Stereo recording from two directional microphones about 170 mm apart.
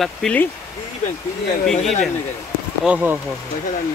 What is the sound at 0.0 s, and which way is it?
Speech, 5° left (ahead or behind).